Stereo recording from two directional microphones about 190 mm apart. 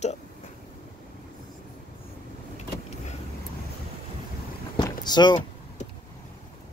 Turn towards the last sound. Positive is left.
turn(degrees=20)  # may be behind; listen again after turning